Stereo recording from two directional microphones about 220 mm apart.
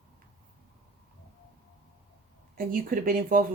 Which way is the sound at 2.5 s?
40° right (ahead or behind).